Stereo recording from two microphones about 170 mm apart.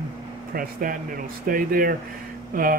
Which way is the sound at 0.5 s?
55° right (ahead or behind).